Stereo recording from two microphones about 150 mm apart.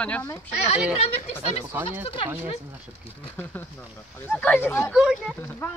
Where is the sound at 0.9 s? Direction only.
45° left (ahead or behind).